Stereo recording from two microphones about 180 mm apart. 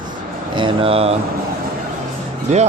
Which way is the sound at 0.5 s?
30° right (ahead or behind).